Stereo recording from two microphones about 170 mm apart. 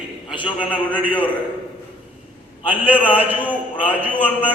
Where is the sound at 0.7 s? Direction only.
10° right (ahead or behind).